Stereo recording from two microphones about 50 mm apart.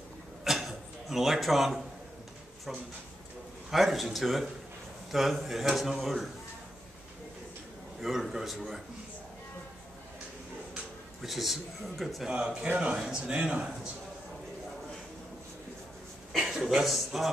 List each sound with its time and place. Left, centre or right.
0.4 s a sound: centre
3.7 s a man's voice: centre
8.0 s a man's voice: centre
11.2 s a man's voice: centre
12.3 s speech: centre
16.3 s speech: centre